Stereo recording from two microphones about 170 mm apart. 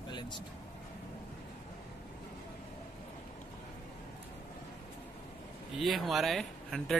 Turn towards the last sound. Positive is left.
turn(degrees=0)  # may be behind; listen again after turning